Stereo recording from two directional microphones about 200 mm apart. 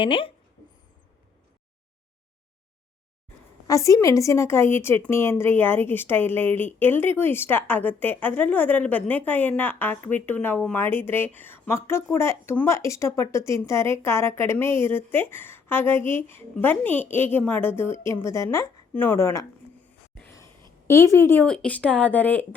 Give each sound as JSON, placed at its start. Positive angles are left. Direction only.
{"t": 0.0, "sound": "speech", "side_deg": 25}
{"t": 3.7, "sound": "a woman's voice", "side_deg": 15}
{"t": 20.8, "sound": "a woman's voice", "side_deg": 15}